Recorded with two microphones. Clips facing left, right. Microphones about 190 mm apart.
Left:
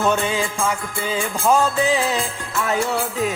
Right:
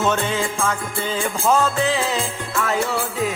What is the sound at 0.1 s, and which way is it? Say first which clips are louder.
Music: left 1 dB; 10° left (ahead or behind).